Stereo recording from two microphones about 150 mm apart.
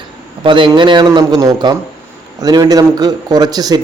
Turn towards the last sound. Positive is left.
turn(degrees=-25)  # may be behind; listen again after turning